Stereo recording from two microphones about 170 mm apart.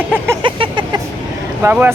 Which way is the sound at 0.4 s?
30° right (ahead or behind).